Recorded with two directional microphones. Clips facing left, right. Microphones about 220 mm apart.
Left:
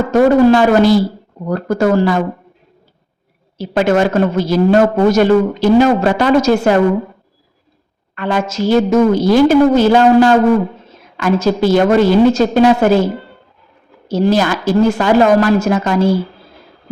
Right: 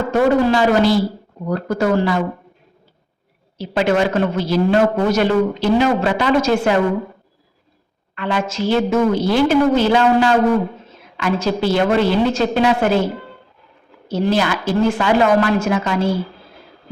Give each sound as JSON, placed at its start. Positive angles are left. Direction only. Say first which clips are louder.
{"t": 0.1, "sound": "a woman's voice", "louder": "left 6 dB", "side_deg": 45}
{"t": 3.6, "sound": "a woman's voice", "louder": "left 4 dB", "side_deg": 45}
{"t": 8.1, "sound": "a woman's voice", "louder": "left 4 dB", "side_deg": 45}
{"t": 14.1, "sound": "a woman's voice", "louder": "left 4 dB", "side_deg": 40}